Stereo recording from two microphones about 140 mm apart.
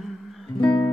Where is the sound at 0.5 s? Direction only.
30° left (ahead or behind).